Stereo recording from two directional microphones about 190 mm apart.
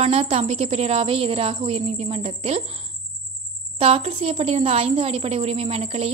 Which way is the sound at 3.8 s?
30° right (ahead or behind).